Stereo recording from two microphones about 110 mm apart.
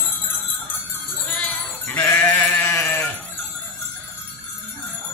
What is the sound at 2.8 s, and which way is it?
Sheep, 25° left (ahead or behind).